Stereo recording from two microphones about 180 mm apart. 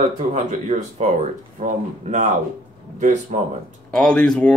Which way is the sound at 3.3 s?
40° right (ahead or behind).